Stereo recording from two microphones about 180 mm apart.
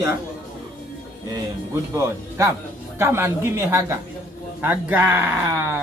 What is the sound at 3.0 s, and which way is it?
Speech, 15° right (ahead or behind).